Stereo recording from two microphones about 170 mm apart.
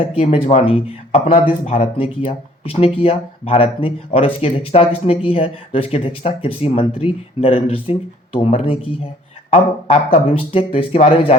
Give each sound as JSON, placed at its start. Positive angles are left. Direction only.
{"t": 0.0, "sound": "speech", "side_deg": 35}